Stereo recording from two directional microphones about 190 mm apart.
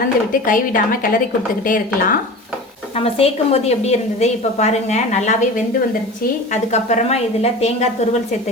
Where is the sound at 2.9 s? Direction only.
30° left (ahead or behind).